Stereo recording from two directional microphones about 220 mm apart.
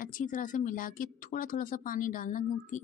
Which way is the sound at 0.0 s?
35° left (ahead or behind).